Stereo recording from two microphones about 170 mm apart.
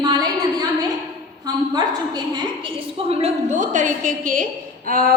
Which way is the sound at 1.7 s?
25° right (ahead or behind).